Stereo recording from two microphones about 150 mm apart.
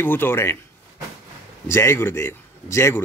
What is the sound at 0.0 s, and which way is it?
Speech, 15° left (ahead or behind).